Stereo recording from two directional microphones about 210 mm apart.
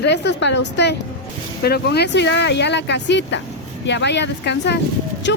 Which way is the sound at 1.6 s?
50° left (ahead or behind).